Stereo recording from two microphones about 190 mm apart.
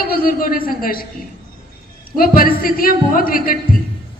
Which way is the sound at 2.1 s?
50° left (ahead or behind).